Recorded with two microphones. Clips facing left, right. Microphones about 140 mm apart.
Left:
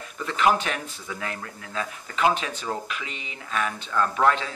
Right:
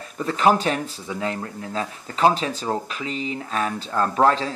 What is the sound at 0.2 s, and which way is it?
Speech, 35° right (ahead or behind).